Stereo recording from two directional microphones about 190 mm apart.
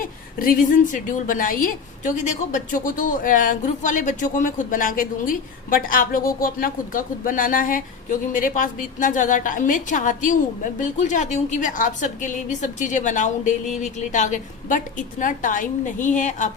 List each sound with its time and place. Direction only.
0.3 s a woman's voice: 45° left (ahead or behind)